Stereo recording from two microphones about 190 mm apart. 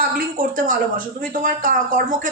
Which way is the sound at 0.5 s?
45° right (ahead or behind).